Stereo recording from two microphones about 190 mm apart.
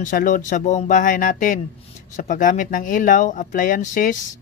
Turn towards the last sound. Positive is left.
turn(degrees=45)  # may be behind; listen again after turning